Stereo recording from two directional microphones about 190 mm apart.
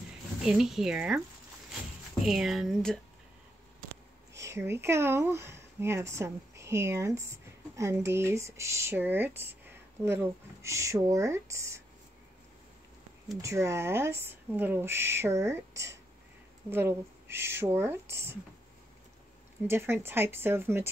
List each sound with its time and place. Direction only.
0.5 s speech: centre (ahead or behind)
2.2 s speech: centre (ahead or behind)
4.3 s speech: 15° right (ahead or behind)
13.4 s speech: 15° right (ahead or behind)
19.7 s speech: 15° right (ahead or behind)